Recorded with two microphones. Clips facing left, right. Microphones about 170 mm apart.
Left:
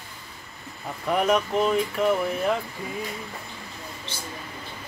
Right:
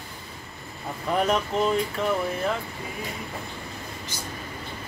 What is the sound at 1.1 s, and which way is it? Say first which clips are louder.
Speech: left 2 dB; 10° left (ahead or behind).